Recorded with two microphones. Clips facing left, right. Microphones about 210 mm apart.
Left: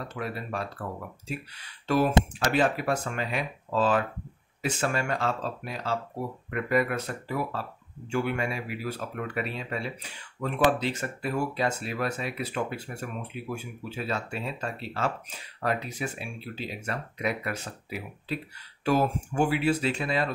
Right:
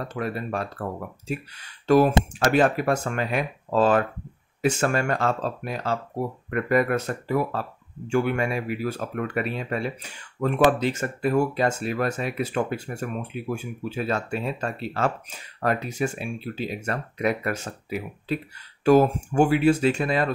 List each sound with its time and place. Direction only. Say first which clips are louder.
0.1 s speech: right 6 dB; 45° right (ahead or behind)